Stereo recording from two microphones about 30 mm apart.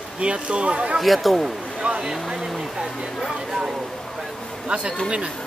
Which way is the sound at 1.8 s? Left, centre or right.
Right.